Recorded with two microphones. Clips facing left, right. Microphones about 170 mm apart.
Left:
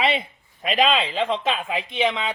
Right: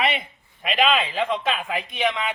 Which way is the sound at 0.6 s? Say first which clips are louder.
Left 1 dB; 40° left (ahead or behind).